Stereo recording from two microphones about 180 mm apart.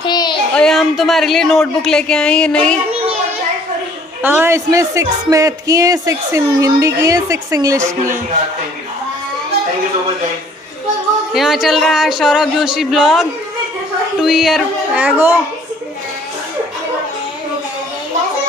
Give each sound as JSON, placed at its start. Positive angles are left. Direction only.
{"t": 0.0, "sound": "child singing", "side_deg": 25}
{"t": 0.6, "sound": "speech", "side_deg": 0}
{"t": 4.2, "sound": "speech", "side_deg": -10}
{"t": 11.3, "sound": "speech", "side_deg": 0}